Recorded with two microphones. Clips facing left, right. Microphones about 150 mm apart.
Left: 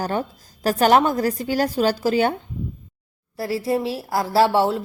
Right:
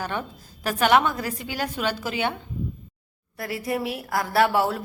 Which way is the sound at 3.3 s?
30° left (ahead or behind).